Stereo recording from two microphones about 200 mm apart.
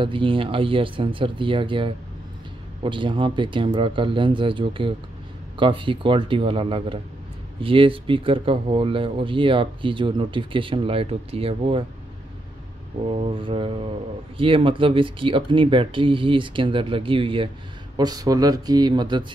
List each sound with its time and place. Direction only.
0.0 s speech: 25° right (ahead or behind)
13.0 s speech: 30° right (ahead or behind)